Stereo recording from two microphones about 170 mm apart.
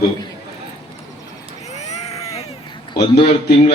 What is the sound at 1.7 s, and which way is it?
Vehicle, 40° left (ahead or behind).